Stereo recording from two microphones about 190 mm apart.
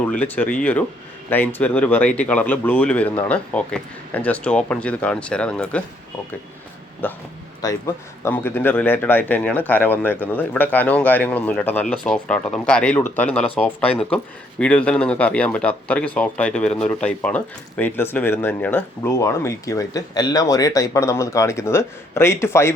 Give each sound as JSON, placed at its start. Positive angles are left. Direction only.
{"t": 0.0, "sound": "speech", "side_deg": 5}
{"t": 7.0, "sound": "speech", "side_deg": 10}